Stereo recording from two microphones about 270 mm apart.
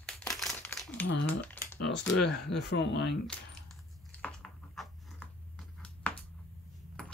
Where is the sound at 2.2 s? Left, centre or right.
Left.